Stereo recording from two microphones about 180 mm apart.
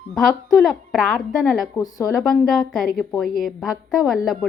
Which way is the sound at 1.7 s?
20° left (ahead or behind).